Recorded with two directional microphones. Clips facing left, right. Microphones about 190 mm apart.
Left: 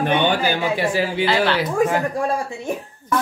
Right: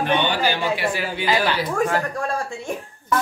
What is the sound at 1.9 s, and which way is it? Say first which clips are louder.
Speech: left 3 dB; 20° left (ahead or behind).